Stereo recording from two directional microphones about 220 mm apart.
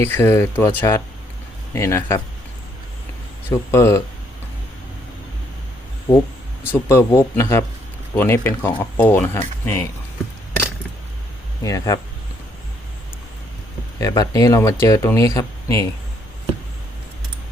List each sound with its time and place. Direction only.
0.0 s speech: 10° left (ahead or behind)
3.7 s speech: 10° left (ahead or behind)
6.1 s speech: 15° left (ahead or behind)
11.6 s speech: 15° left (ahead or behind)
14.0 s speech: 15° left (ahead or behind)